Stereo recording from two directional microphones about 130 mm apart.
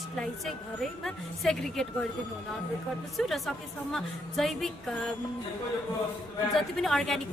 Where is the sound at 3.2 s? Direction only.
5° left (ahead or behind).